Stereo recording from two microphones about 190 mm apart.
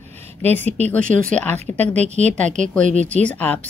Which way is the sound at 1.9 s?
35° right (ahead or behind).